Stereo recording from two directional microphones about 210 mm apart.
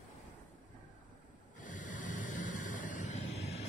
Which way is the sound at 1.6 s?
40° left (ahead or behind).